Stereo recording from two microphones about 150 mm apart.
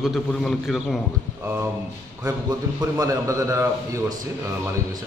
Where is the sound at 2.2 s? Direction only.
25° right (ahead or behind).